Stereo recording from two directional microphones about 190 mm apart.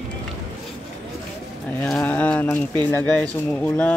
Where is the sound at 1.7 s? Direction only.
5° left (ahead or behind).